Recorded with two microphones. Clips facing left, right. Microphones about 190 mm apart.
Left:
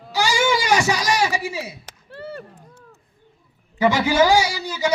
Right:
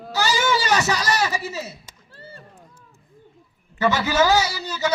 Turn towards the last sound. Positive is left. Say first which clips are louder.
# left 2 dB
turn(degrees=10)  # may be behind; listen again after turning